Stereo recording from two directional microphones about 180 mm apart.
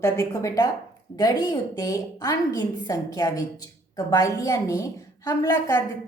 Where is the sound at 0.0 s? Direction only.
15° left (ahead or behind).